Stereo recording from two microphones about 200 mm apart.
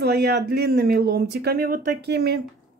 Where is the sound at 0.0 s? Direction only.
55° right (ahead or behind).